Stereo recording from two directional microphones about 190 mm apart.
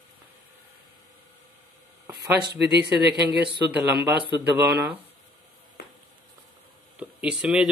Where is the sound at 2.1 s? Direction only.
25° right (ahead or behind).